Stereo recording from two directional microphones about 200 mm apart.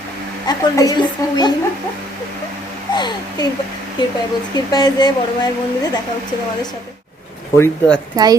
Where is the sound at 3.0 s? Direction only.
20° left (ahead or behind).